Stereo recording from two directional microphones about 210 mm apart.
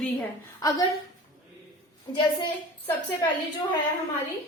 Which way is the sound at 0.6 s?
15° left (ahead or behind).